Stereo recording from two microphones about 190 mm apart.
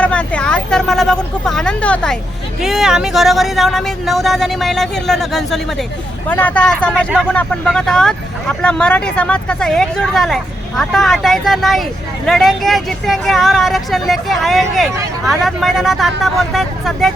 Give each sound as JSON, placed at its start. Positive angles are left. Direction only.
{"t": 0.0, "sound": "vehicle", "side_deg": 5}
{"t": 2.6, "sound": "speech", "side_deg": 0}